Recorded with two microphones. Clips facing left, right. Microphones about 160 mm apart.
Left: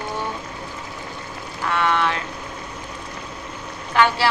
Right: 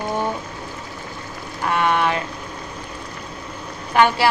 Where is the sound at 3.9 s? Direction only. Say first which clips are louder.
Right 2 dB; 15° right (ahead or behind).